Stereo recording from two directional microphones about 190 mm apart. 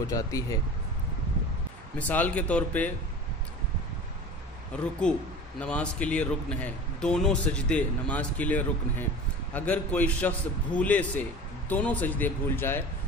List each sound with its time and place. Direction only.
0.0 s a man's voice: 15° left (ahead or behind)
2.0 s a man's voice: 10° left (ahead or behind)
4.7 s a man's voice: 5° left (ahead or behind)